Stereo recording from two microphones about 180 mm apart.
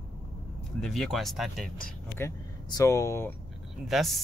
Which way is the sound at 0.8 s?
Centre (ahead or behind).